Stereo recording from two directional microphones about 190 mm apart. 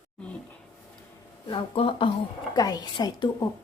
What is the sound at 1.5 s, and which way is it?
A woman's voice, 30° left (ahead or behind).